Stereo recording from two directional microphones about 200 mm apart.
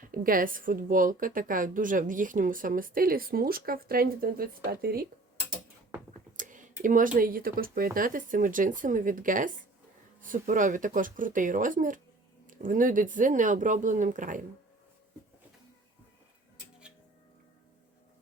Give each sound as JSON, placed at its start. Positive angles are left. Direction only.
{"t": 0.1, "sound": "a woman's voice", "side_deg": -45}
{"t": 6.3, "sound": "speech", "side_deg": -40}